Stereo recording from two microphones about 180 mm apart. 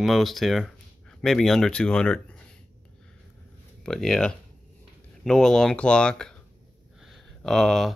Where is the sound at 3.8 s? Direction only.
5° left (ahead or behind).